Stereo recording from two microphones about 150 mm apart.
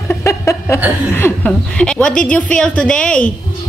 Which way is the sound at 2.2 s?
5° left (ahead or behind).